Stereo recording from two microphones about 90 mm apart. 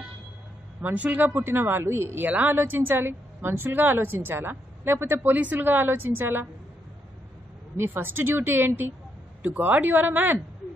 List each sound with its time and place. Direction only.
0.8 s a woman's voice: 15° right (ahead or behind)
7.7 s a woman's voice: 25° right (ahead or behind)